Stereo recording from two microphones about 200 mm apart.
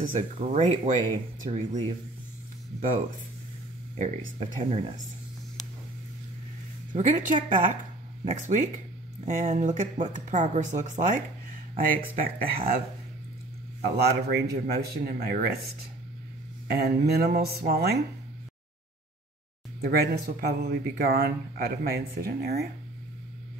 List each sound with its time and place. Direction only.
0.0 s speech: 40° right (ahead or behind)
4.0 s speech: 35° right (ahead or behind)
7.0 s speech: 40° right (ahead or behind)
13.7 s speech: 50° right (ahead or behind)
16.7 s speech: 50° right (ahead or behind)
19.8 s speech: 50° right (ahead or behind)